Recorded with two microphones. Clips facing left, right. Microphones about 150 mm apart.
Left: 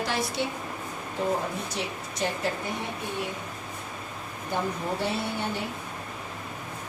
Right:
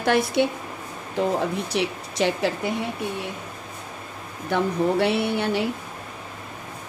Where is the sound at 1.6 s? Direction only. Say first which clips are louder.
Right 7 dB; 80° right.